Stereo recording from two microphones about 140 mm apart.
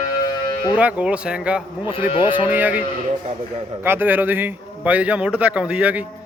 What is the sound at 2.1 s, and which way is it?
Speech, 40° left (ahead or behind).